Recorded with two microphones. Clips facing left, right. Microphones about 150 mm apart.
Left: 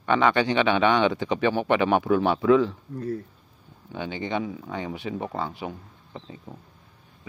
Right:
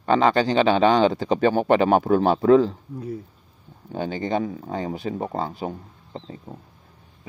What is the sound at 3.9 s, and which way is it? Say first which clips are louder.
Speech: right 4 dB; 40° right (ahead or behind).